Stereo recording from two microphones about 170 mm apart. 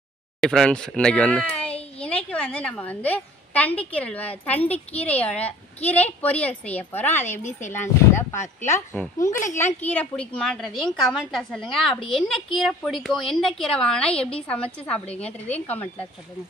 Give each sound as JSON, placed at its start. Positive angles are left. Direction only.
{"t": 0.4, "sound": "a child's voice", "side_deg": 5}
{"t": 15.0, "sound": "a woman's voice", "side_deg": 35}
{"t": 15.4, "sound": "speech", "side_deg": 10}